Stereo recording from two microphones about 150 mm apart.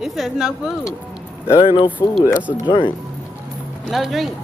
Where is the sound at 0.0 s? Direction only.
Centre (ahead or behind).